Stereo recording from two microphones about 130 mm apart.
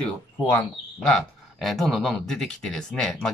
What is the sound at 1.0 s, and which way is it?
Speech, 5° left (ahead or behind).